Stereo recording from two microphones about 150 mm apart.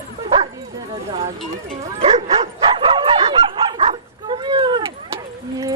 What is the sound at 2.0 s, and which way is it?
Dog, 45° right (ahead or behind).